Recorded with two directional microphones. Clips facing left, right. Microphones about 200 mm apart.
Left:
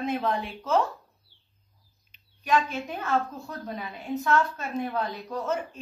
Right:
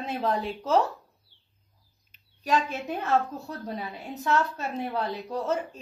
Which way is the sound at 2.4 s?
40° right (ahead or behind).